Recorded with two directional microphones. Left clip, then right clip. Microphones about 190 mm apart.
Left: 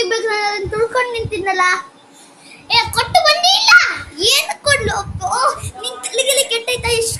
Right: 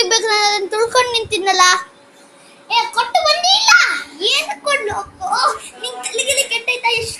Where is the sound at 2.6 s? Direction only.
25° left (ahead or behind).